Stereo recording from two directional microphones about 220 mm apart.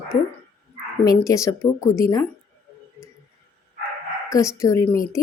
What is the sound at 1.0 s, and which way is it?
Speech, 15° left (ahead or behind).